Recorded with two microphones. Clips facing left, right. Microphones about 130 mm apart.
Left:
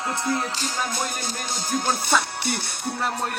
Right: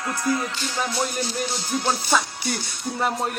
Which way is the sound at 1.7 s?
50° left (ahead or behind).